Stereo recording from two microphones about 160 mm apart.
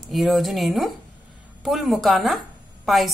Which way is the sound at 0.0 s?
Centre (ahead or behind).